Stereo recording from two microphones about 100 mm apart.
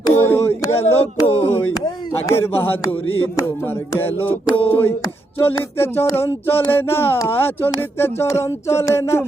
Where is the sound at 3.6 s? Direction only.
20° left (ahead or behind).